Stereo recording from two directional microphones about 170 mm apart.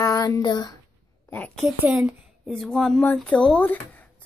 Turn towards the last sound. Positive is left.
turn(degrees=10)  # may be behind; listen again after turning